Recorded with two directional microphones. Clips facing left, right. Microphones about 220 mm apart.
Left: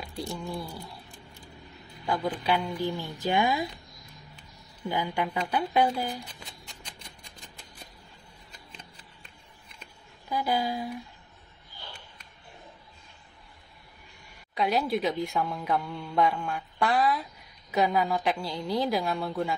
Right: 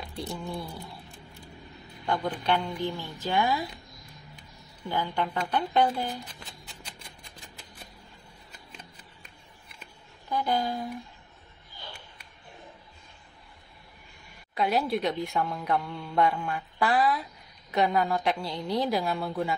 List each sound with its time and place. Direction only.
0.1 s speech: centre (ahead or behind)
2.0 s speech: 5° left (ahead or behind)
3.0 s a woman's voice: 15° left (ahead or behind)
4.8 s a woman's voice: 15° left (ahead or behind)
10.3 s a woman's voice: 5° left (ahead or behind)
14.5 s speech: centre (ahead or behind)